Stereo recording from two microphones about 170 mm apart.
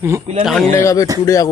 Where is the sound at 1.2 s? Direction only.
20° left (ahead or behind).